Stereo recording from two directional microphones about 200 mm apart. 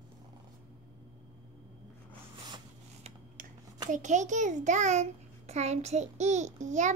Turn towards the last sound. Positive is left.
turn(degrees=-35)  # may be behind; listen again after turning